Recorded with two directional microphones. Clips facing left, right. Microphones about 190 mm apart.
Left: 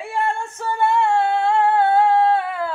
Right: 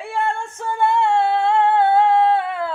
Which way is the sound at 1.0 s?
20° right (ahead or behind).